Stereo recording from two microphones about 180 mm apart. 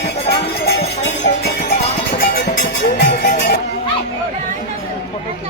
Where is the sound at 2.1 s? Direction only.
55° left (ahead or behind).